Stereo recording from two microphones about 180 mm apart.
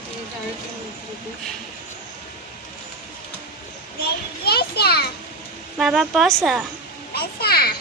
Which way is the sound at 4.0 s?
60° left (ahead or behind).